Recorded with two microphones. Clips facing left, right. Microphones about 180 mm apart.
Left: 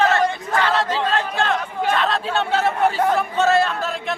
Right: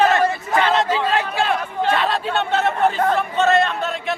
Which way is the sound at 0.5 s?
20° right (ahead or behind).